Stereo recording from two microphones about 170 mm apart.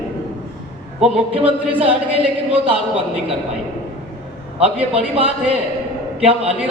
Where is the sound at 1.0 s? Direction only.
35° right (ahead or behind).